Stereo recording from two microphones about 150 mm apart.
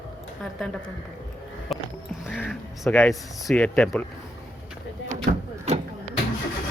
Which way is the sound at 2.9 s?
Centre (ahead or behind).